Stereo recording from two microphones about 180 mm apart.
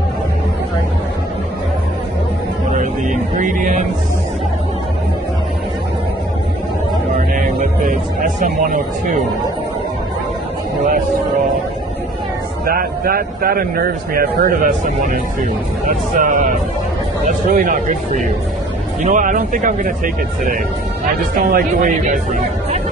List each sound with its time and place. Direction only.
2.7 s music: 45° right (ahead or behind)
7.3 s music: 50° right (ahead or behind)
12.6 s a man's voice: 55° right (ahead or behind)
15.9 s speech: 45° right (ahead or behind)
21.5 s speech: 50° right (ahead or behind)